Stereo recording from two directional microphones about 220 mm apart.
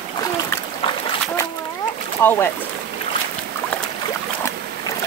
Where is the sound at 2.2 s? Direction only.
10° left (ahead or behind).